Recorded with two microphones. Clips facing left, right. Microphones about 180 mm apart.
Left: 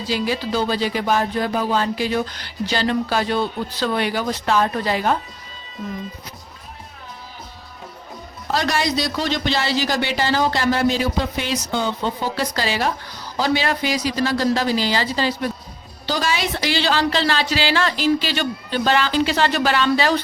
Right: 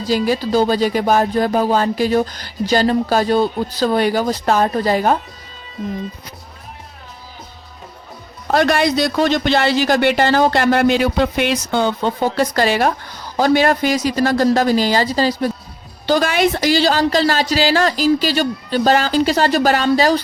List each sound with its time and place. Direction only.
0.0 s music: 40° right (ahead or behind)
8.4 s speech: 55° right (ahead or behind); by 15.5 s 40° right (ahead or behind)
16.0 s music: 55° right (ahead or behind)